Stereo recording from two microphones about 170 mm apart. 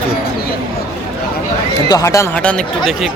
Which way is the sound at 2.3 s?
5° left (ahead or behind).